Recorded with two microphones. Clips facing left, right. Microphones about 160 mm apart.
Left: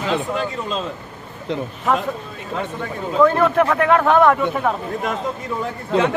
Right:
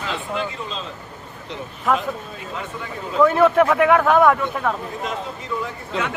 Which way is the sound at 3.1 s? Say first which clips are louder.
Even; 10° right (ahead or behind).